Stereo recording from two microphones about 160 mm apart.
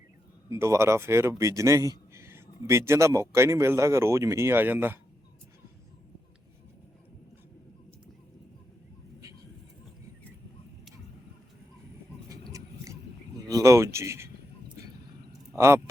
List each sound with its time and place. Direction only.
0.5 s speech: 20° right (ahead or behind)
12.3 s a sound: 20° right (ahead or behind)
15.5 s speech: 15° right (ahead or behind)